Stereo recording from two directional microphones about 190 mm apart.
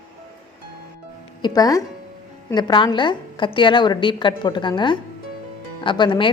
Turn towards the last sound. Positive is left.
turn(degrees=25)  # may be behind; listen again after turning